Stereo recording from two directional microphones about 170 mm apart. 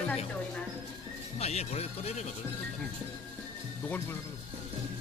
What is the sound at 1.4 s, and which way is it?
Speech, 40° left (ahead or behind).